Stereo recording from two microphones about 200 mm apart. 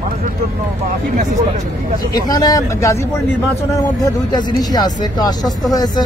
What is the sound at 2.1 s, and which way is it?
Speech, 20° left (ahead or behind).